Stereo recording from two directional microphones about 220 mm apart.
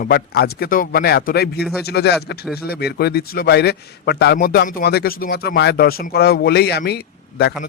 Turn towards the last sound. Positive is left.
turn(degrees=45)  # may be behind; listen again after turning